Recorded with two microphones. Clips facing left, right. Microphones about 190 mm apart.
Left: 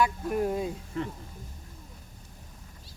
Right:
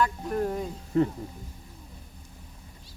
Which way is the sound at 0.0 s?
15° left (ahead or behind).